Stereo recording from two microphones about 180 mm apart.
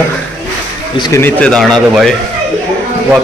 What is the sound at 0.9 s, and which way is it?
Speech, 25° left (ahead or behind).